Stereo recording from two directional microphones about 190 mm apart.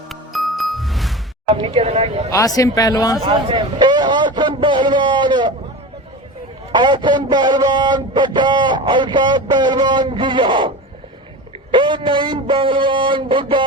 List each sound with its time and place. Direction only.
0.1 s music: centre (ahead or behind)
1.5 s speech: 25° right (ahead or behind)
2.3 s a man's voice: 15° left (ahead or behind)
3.2 s speech: 25° right (ahead or behind)
6.7 s speech: 25° right (ahead or behind)
11.7 s speech: 25° right (ahead or behind)